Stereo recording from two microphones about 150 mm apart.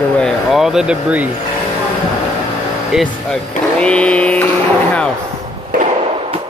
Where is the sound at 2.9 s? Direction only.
Centre (ahead or behind).